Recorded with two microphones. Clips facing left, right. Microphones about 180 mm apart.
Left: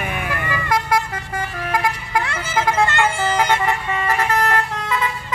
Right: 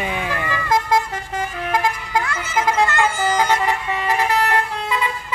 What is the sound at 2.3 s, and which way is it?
Vehicle, 30° left (ahead or behind).